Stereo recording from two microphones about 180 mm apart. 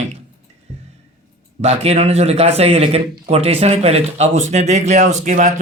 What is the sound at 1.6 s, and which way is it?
Speech, 35° right (ahead or behind).